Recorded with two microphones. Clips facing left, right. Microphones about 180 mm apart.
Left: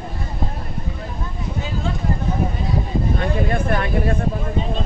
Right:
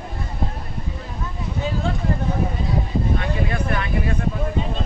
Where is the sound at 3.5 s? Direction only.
50° left (ahead or behind).